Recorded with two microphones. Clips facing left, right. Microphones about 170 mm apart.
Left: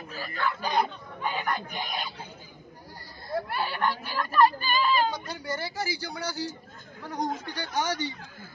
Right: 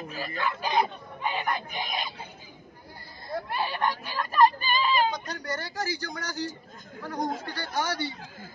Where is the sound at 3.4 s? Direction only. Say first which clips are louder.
Right 2 dB; 15° right (ahead or behind).